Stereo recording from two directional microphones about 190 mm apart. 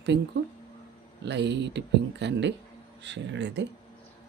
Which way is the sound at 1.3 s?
65° right (ahead or behind).